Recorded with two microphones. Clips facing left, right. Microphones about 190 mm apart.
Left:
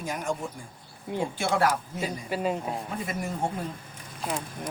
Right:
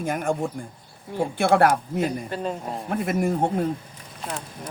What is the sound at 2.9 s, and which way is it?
Speech, 60° right (ahead or behind).